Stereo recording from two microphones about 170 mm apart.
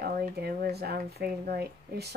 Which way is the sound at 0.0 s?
65° right (ahead or behind).